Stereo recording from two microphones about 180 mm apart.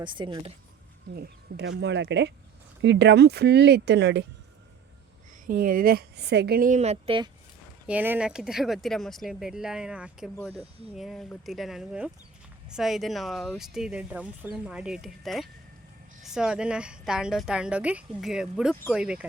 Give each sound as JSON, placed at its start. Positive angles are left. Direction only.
{"t": 0.0, "sound": "speech", "side_deg": -25}
{"t": 1.1, "sound": "speech", "side_deg": -65}
{"t": 5.5, "sound": "speech", "side_deg": -50}
{"t": 7.9, "sound": "a woman's voice", "side_deg": -10}